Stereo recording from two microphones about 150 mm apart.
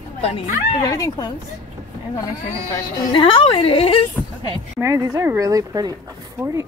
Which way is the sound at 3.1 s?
35° left (ahead or behind).